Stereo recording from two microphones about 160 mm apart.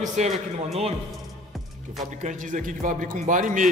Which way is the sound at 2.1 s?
50° right (ahead or behind).